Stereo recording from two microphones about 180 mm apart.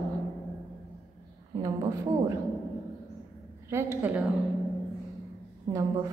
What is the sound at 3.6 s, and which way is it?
Speech, 15° right (ahead or behind).